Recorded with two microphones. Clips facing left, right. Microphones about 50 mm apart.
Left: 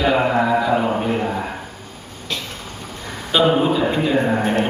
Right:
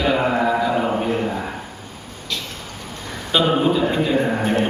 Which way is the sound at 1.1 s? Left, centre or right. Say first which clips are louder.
Left 1 dB; centre.